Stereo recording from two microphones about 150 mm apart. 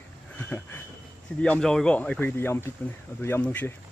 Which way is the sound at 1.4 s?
5° left (ahead or behind).